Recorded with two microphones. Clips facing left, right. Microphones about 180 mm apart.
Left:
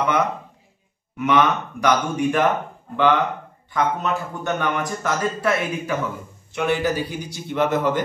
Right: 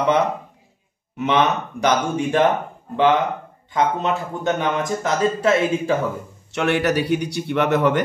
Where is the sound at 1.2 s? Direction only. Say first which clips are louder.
Even; 25° right (ahead or behind).